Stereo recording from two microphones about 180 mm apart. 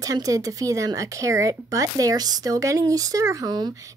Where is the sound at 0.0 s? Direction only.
20° right (ahead or behind).